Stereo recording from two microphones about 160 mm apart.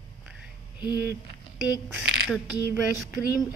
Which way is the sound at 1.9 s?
10° right (ahead or behind).